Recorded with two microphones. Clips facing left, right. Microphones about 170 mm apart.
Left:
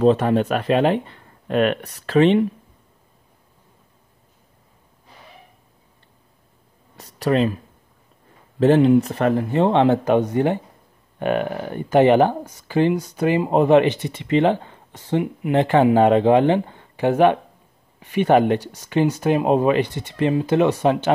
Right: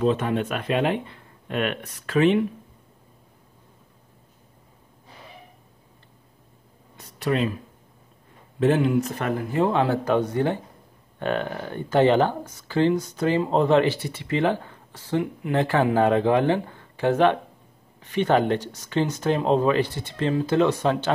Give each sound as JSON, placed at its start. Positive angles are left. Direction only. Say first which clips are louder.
{"t": 0.0, "sound": "speech", "louder": "left 6 dB", "side_deg": 40}
{"t": 7.0, "sound": "a sound", "louder": "left 5 dB", "side_deg": 35}
{"t": 8.5, "sound": "speech", "louder": "left 6 dB", "side_deg": 35}